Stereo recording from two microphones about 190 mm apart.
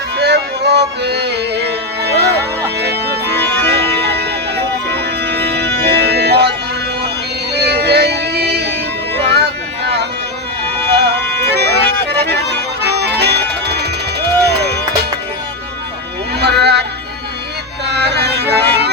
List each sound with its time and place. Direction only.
0.2 s music: 60° right (ahead or behind)
3.3 s music: 60° right (ahead or behind)
7.5 s music: 60° right (ahead or behind)
10.9 s music: 60° right (ahead or behind)
16.4 s a sound: 60° right (ahead or behind)
17.8 s music: 60° right (ahead or behind)